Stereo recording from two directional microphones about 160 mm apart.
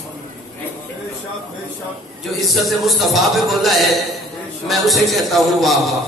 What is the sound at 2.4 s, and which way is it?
A man's voice, centre (ahead or behind).